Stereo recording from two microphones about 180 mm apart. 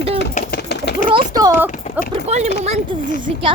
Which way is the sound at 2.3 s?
40° right (ahead or behind).